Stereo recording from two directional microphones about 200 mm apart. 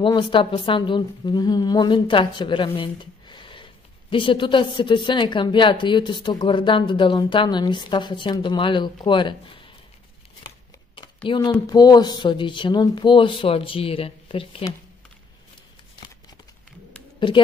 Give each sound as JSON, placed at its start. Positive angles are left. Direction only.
{"t": 0.0, "sound": "a woman's voice", "side_deg": 25}
{"t": 11.2, "sound": "a woman's voice", "side_deg": 20}
{"t": 17.2, "sound": "a woman's voice", "side_deg": 25}